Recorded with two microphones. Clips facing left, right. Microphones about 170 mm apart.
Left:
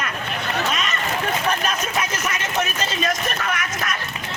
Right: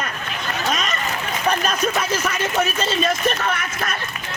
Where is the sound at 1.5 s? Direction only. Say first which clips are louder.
Right 3 dB; 35° right (ahead or behind).